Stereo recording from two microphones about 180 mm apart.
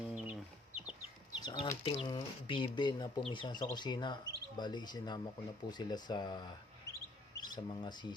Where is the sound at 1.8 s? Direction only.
30° left (ahead or behind).